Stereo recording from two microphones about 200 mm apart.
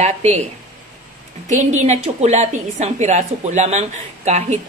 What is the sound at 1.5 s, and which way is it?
A woman's voice, 35° right (ahead or behind).